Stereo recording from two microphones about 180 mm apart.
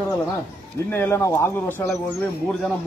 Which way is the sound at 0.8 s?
10° left (ahead or behind).